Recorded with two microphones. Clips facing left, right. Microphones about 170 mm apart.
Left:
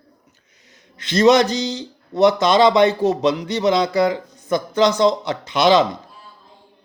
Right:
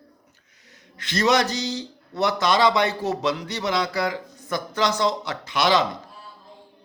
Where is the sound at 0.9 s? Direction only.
20° left (ahead or behind).